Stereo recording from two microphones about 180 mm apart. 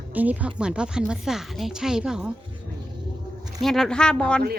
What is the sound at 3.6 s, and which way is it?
Speech, centre (ahead or behind).